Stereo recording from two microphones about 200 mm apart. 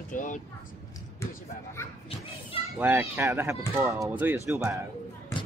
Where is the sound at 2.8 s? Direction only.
10° right (ahead or behind).